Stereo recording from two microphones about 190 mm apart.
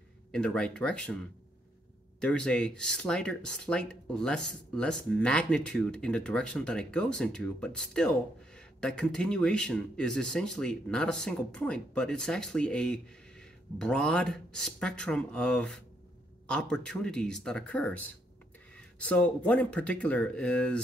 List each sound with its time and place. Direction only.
0.3 s speech: 5° left (ahead or behind)
2.1 s speech: 5° left (ahead or behind)